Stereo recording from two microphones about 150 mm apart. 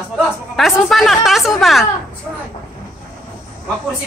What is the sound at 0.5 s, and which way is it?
Speech, centre (ahead or behind).